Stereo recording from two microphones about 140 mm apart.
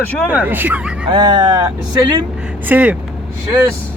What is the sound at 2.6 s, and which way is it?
Speech, 10° right (ahead or behind).